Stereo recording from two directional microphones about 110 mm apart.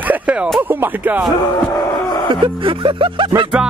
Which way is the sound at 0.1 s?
10° right (ahead or behind).